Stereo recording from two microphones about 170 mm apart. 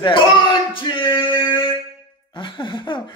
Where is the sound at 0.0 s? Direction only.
30° left (ahead or behind).